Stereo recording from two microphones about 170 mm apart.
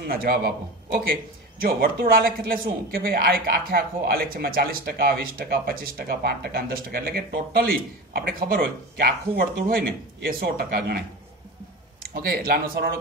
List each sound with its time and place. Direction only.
0.0 s speech: 60° right (ahead or behind)
12.1 s speech: 60° right (ahead or behind)